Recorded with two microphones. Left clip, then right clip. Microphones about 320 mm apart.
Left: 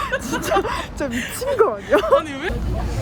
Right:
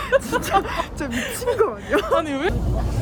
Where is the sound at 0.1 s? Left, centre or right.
Right.